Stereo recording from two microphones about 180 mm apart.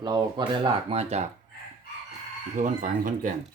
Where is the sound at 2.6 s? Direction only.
45° right (ahead or behind).